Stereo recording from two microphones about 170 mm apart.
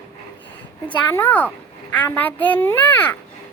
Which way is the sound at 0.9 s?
10° left (ahead or behind).